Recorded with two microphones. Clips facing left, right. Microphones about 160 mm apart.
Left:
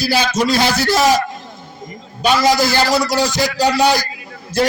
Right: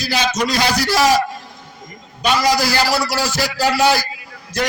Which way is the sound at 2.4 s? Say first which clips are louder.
Left 2 dB; 20° left (ahead or behind).